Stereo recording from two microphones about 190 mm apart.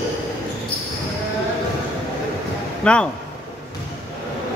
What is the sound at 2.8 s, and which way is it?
Speech, 5° left (ahead or behind).